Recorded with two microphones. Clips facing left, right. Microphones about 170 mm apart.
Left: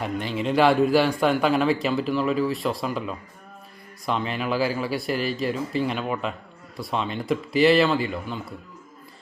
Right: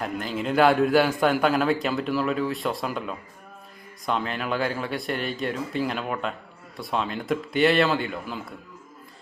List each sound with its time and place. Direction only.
0.0 s speech: centre (ahead or behind)